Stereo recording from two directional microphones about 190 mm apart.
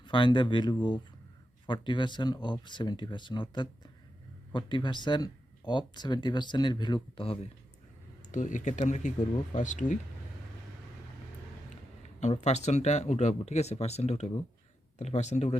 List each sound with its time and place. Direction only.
0.0 s speech: 25° left (ahead or behind)
8.3 s speech: 40° left (ahead or behind)
12.0 s speech: 35° left (ahead or behind)